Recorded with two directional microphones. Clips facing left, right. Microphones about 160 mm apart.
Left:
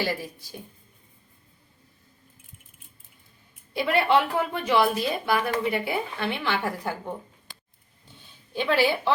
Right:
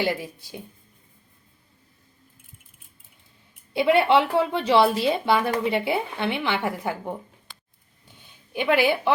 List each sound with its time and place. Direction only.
0.0 s speech: 20° right (ahead or behind)
3.7 s speech: 25° right (ahead or behind)
8.5 s a woman's voice: 20° right (ahead or behind)